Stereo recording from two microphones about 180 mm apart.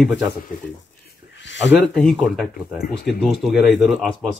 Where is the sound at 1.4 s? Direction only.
85° left.